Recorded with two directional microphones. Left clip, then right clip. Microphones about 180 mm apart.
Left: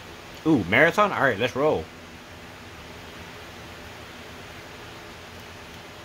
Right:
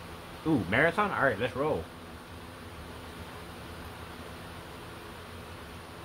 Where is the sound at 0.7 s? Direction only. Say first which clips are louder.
Left 7 dB; 85° left.